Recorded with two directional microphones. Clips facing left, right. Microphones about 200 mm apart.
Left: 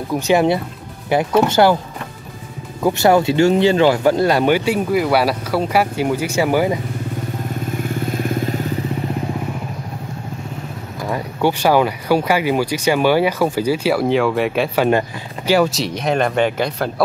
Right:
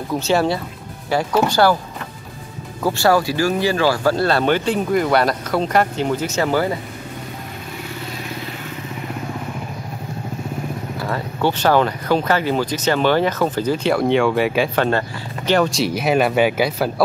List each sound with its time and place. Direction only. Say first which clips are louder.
0.1 s speech: left 3 dB; 15° left (ahead or behind)
2.8 s speech: left 3 dB; 20° left (ahead or behind)
7.9 s vehicle: left 10 dB; 50° left (ahead or behind)
11.0 s speech: left 3 dB; 15° left (ahead or behind)
14.9 s speech: left 4 dB; 10° left (ahead or behind); by 16.9 s 5° right (ahead or behind)